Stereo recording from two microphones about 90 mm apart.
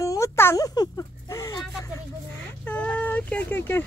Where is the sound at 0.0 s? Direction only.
35° left (ahead or behind).